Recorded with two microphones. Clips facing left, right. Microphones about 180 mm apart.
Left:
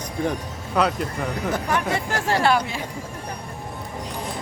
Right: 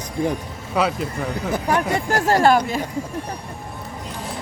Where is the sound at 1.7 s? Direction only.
40° right (ahead or behind).